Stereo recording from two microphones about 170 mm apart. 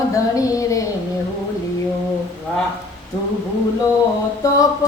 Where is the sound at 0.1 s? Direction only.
20° left (ahead or behind).